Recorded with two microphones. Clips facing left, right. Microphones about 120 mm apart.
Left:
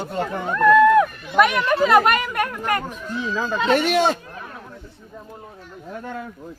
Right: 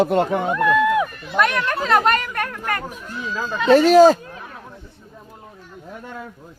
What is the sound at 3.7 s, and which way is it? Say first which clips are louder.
Speech: right 9 dB; 35° right (ahead or behind).